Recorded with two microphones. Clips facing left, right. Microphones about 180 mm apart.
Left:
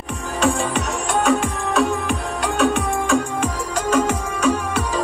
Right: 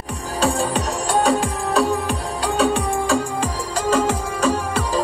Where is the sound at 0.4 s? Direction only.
35° right (ahead or behind).